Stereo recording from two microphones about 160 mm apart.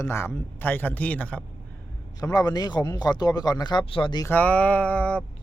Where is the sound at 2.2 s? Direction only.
25° left (ahead or behind).